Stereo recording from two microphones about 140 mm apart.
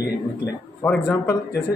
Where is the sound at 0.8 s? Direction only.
10° left (ahead or behind).